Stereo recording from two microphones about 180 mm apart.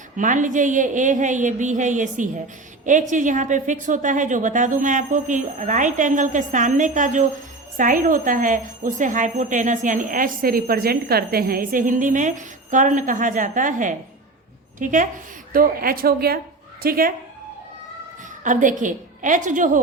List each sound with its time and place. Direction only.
0.2 s a woman's voice: 45° right (ahead or behind)
18.4 s a woman's voice: 45° right (ahead or behind)